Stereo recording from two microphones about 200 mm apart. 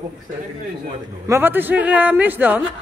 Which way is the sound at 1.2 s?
10° right (ahead or behind).